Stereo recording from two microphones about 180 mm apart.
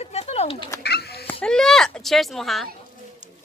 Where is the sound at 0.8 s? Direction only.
65° left (ahead or behind).